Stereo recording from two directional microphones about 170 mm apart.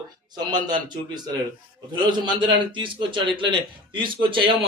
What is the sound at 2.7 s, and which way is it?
A man's voice, 30° right (ahead or behind).